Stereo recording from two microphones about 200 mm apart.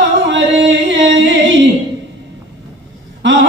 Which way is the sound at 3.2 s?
65° right (ahead or behind).